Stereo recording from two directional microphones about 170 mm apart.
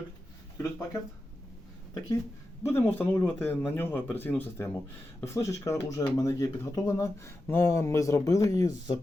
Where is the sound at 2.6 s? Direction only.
10° left (ahead or behind).